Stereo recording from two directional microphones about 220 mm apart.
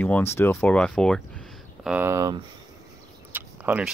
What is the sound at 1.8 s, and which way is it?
Speech, 5° right (ahead or behind).